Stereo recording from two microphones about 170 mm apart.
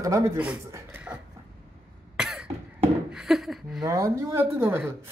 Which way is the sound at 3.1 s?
5° right (ahead or behind).